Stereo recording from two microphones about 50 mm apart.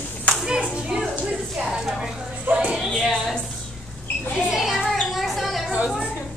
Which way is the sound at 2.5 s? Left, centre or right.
Right.